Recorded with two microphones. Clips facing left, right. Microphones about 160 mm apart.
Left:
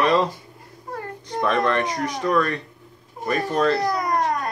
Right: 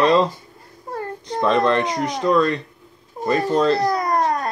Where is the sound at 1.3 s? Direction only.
25° right (ahead or behind).